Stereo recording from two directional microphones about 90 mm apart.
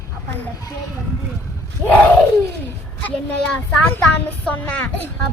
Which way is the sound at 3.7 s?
15° left (ahead or behind).